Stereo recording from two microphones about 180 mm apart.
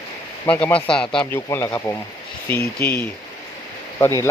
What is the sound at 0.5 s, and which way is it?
Speech, 10° left (ahead or behind).